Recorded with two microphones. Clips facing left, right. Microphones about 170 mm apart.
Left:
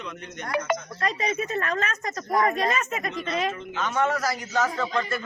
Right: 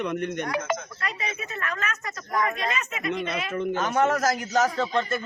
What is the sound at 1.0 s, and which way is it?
A woman's voice, 40° left (ahead or behind).